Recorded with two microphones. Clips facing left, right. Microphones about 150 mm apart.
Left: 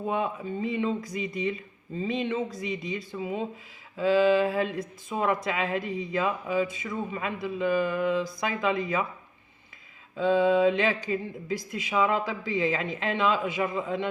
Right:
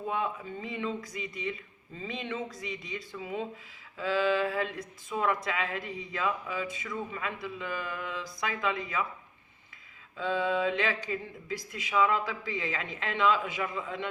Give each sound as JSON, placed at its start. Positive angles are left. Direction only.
{"t": 0.1, "sound": "speech", "side_deg": 20}
{"t": 3.2, "sound": "a sound", "side_deg": 20}
{"t": 4.8, "sound": "speech", "side_deg": 25}
{"t": 10.2, "sound": "speech", "side_deg": 20}